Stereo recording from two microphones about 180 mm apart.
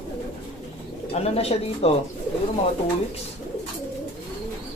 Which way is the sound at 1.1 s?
35° left (ahead or behind).